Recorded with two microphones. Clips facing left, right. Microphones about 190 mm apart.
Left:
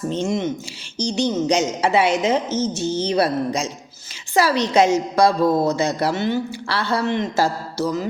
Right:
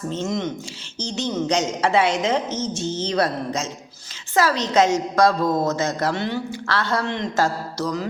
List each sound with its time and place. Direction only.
0.1 s a woman's voice: 15° left (ahead or behind)